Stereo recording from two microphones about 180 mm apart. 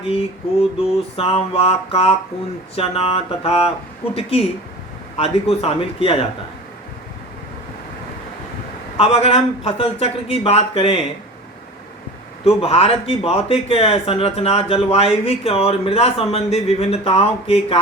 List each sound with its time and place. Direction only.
0.0 s speech: 35° left (ahead or behind)
9.0 s speech: 35° left (ahead or behind)
12.5 s speech: 35° left (ahead or behind)